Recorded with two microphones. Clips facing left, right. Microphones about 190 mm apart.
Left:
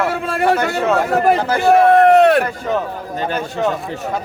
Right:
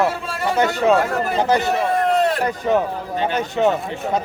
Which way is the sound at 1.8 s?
65° left (ahead or behind).